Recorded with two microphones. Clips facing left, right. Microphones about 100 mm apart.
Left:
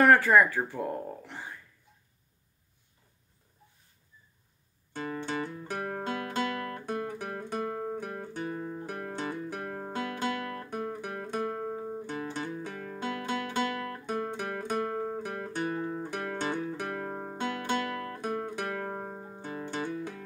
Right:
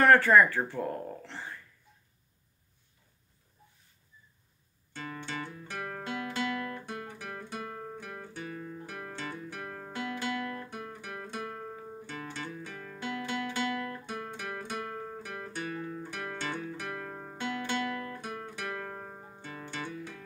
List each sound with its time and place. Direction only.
0.0 s speech: 10° left (ahead or behind)
4.9 s music: 40° left (ahead or behind)
7.4 s guitar: 35° left (ahead or behind)
12.1 s music: 40° left (ahead or behind)
17.4 s music: 45° left (ahead or behind); by 19.4 s 25° left (ahead or behind)
19.4 s music: 40° left (ahead or behind)